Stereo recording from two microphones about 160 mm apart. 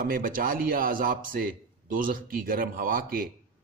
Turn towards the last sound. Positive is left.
turn(degrees=-65)  # may be behind; listen again after turning